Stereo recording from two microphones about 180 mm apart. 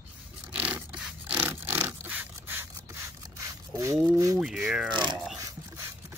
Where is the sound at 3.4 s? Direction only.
15° right (ahead or behind).